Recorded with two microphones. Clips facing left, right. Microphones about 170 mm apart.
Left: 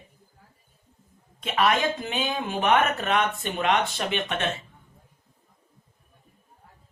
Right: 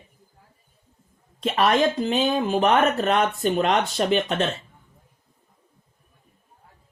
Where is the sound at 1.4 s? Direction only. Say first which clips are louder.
Right 4 dB; 35° right (ahead or behind).